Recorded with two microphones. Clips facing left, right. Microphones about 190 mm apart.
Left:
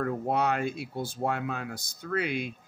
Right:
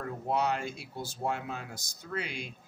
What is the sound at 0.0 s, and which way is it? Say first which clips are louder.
Speech: left 4 dB; 55° left (ahead or behind).